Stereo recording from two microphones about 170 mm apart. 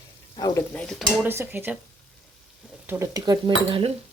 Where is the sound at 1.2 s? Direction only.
10° right (ahead or behind).